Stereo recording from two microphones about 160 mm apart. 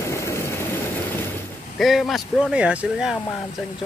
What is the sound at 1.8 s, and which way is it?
Speech, centre (ahead or behind).